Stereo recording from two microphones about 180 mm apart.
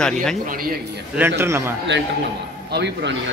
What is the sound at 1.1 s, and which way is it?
Speech, 10° right (ahead or behind).